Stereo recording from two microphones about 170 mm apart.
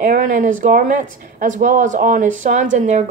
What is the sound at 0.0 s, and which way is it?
Speech, 55° right (ahead or behind).